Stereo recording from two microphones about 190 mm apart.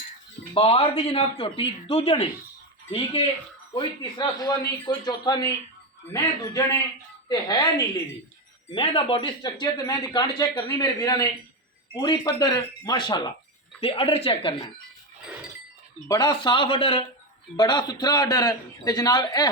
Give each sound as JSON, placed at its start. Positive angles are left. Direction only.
{"t": 0.5, "sound": "speech", "side_deg": 30}
{"t": 7.3, "sound": "a man's voice", "side_deg": 20}
{"t": 16.0, "sound": "speech", "side_deg": 20}